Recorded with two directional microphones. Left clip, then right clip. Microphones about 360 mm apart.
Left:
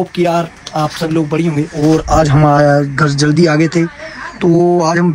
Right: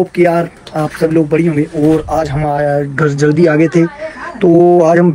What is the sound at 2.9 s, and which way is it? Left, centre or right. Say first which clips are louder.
Speech: right 1 dB; centre.